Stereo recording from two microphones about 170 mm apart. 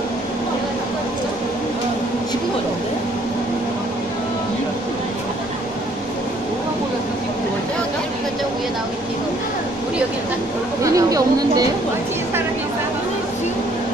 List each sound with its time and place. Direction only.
10.8 s chatter: 20° right (ahead or behind)